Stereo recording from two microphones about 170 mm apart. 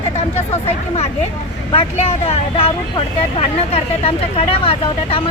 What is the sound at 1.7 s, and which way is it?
Speech, 35° left (ahead or behind).